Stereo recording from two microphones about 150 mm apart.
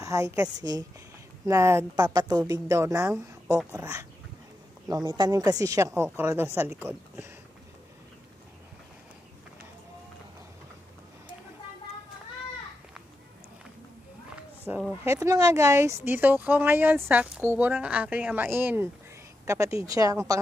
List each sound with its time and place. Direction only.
0.0 s a woman's voice: 20° right (ahead or behind)
4.8 s speech: 25° right (ahead or behind)
14.7 s speech: 10° right (ahead or behind)
15.0 s a woman's voice: 20° right (ahead or behind)